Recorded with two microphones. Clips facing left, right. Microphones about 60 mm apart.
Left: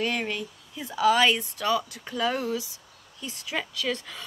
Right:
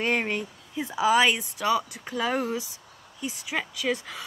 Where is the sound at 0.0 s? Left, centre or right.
Right.